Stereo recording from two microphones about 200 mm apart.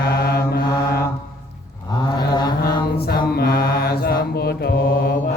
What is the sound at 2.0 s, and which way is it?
Mantra, 20° left (ahead or behind).